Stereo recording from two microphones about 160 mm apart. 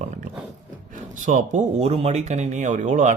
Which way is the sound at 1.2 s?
50° right (ahead or behind).